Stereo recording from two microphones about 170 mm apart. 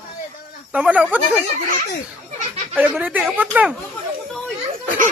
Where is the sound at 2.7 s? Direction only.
10° right (ahead or behind).